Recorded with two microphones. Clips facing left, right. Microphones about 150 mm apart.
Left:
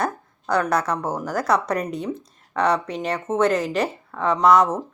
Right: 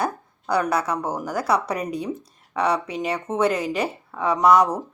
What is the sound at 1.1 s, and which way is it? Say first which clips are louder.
Speech: left 1 dB; 5° right (ahead or behind).